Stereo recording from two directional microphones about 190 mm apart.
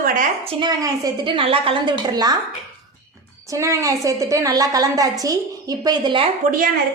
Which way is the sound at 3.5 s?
15° right (ahead or behind).